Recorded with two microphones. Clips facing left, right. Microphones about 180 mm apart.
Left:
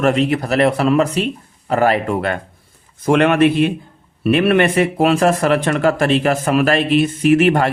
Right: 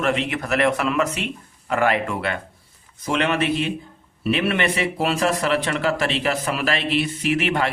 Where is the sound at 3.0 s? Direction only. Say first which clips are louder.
Left 9 dB; 55° left (ahead or behind).